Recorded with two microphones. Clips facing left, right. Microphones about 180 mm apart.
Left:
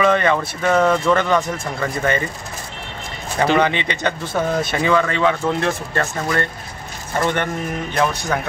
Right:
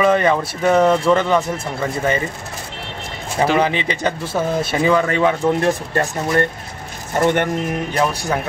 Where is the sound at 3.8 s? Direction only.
35° right (ahead or behind).